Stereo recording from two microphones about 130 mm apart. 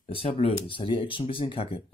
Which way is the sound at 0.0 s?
45° left (ahead or behind).